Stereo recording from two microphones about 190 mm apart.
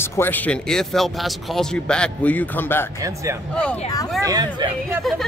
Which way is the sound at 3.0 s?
15° right (ahead or behind).